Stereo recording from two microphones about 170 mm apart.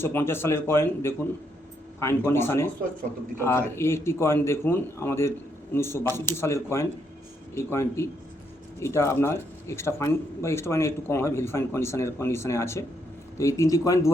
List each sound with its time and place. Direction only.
0.0 s a man's voice: 15° left (ahead or behind)